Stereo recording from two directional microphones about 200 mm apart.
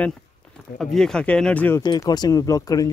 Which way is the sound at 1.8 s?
20° left (ahead or behind).